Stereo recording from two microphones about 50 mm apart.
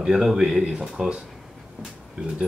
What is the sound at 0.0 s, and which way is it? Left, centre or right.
Speech, centre.